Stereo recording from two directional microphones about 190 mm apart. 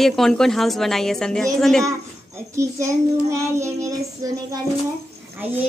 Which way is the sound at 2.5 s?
15° right (ahead or behind).